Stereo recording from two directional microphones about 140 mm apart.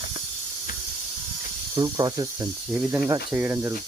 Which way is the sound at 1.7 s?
30° right (ahead or behind).